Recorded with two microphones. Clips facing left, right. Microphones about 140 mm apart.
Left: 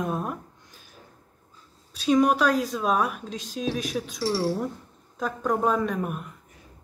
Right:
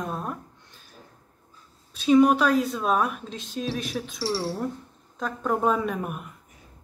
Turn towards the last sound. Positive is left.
turn(degrees=-5)  # may be behind; listen again after turning